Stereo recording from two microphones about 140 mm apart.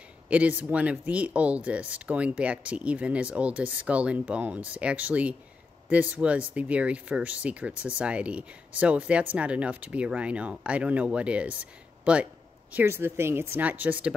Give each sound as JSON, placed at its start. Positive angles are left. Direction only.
{"t": 0.3, "sound": "speech", "side_deg": -10}